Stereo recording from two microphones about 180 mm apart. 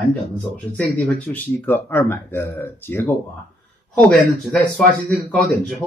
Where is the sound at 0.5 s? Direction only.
10° left (ahead or behind).